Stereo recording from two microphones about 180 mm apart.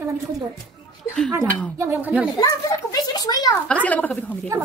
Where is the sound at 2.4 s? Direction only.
20° left (ahead or behind).